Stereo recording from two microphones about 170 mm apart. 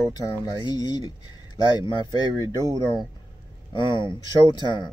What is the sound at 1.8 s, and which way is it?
Speech, 25° left (ahead or behind).